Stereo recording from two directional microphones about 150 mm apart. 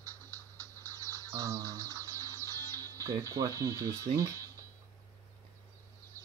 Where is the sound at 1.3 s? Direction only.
25° right (ahead or behind).